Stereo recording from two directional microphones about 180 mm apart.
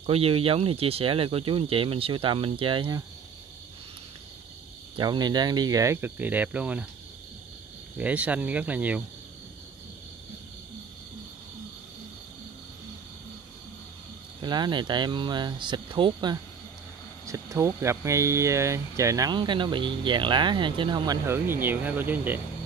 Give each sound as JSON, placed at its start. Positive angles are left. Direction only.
{"t": 0.0, "sound": "speech", "side_deg": -35}
{"t": 4.9, "sound": "speech", "side_deg": -25}
{"t": 8.0, "sound": "speech", "side_deg": -5}
{"t": 14.4, "sound": "speech", "side_deg": -25}
{"t": 21.3, "sound": "speech", "side_deg": -10}